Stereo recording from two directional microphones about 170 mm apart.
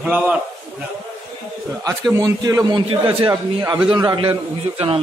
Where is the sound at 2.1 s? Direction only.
20° right (ahead or behind).